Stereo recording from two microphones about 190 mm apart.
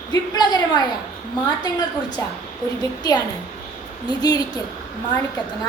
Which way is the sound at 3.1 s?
20° left (ahead or behind).